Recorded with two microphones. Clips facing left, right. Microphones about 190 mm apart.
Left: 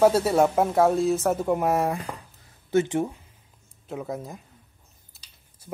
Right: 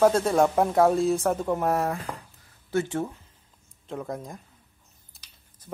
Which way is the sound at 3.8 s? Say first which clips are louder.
Left 1 dB; 5° left (ahead or behind).